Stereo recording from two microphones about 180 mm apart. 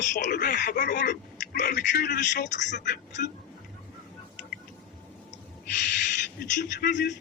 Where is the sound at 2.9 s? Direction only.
75° left (ahead or behind).